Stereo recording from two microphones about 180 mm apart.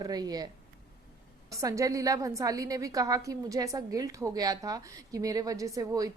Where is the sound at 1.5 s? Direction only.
15° right (ahead or behind).